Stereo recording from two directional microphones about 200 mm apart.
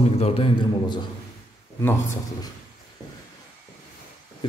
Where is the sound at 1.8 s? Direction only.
15° left (ahead or behind).